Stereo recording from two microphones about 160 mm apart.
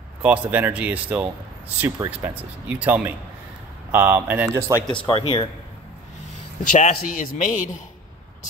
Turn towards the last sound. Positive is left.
turn(degrees=50)  # may be behind; listen again after turning